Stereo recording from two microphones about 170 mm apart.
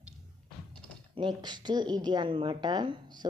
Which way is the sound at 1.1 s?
25° right (ahead or behind).